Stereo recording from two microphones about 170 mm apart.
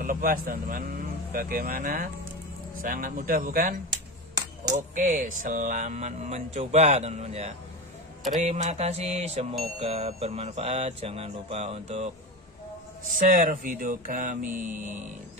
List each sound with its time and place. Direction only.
0.0 s a man's voice: 55° right (ahead or behind); by 7.5 s 40° right (ahead or behind)
8.4 s mantra: 45° right (ahead or behind)
13.3 s speech: 55° right (ahead or behind)